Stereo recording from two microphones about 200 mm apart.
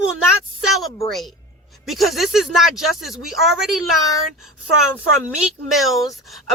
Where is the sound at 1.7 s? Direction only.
Centre (ahead or behind).